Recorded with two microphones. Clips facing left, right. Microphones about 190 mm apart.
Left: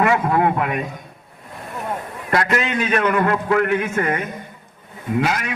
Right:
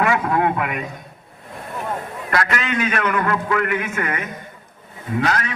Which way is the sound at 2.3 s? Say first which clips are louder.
Left 2 dB; 20° left (ahead or behind).